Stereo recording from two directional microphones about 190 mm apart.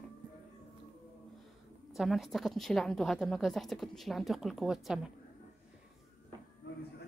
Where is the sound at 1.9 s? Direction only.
Centre (ahead or behind).